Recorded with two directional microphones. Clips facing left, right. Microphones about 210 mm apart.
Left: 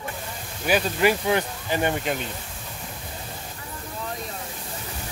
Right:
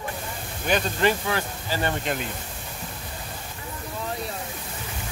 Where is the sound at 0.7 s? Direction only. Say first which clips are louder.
Left 2 dB; 5° left (ahead or behind).